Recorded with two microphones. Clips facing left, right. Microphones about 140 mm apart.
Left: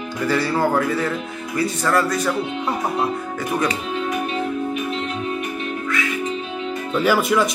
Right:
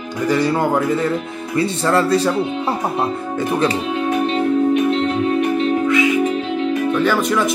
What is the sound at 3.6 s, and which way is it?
Speech, 30° right (ahead or behind).